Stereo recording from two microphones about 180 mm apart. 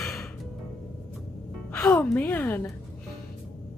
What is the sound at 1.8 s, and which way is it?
Speech, 5° left (ahead or behind).